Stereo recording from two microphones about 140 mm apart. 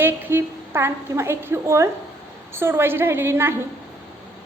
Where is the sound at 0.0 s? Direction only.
15° right (ahead or behind).